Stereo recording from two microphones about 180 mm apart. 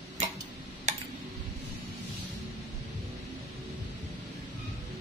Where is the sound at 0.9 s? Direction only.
40° right (ahead or behind).